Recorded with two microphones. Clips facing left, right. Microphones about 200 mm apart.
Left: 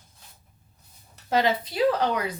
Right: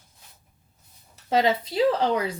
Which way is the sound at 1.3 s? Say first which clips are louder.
Right 2 dB; 25° right (ahead or behind).